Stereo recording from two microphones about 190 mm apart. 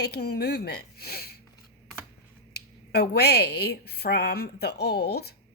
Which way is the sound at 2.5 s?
60° left (ahead or behind).